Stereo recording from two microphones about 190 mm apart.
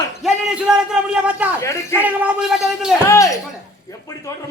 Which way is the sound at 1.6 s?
15° left (ahead or behind).